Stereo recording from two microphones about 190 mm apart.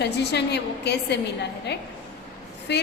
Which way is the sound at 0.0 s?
60° left (ahead or behind).